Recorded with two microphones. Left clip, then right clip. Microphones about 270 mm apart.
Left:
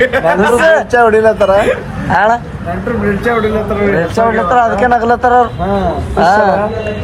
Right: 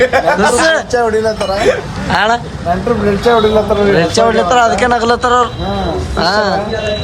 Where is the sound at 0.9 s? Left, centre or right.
Left.